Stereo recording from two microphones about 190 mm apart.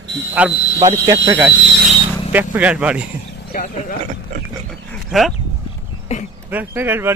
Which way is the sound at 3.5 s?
50° left (ahead or behind).